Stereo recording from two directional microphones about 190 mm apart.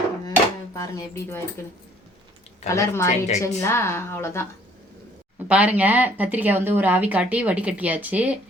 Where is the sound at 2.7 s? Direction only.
15° left (ahead or behind).